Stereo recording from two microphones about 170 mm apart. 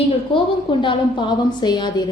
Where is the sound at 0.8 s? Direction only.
30° left (ahead or behind).